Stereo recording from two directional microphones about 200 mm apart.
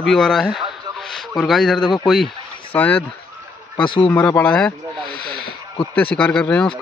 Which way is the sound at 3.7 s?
25° left (ahead or behind).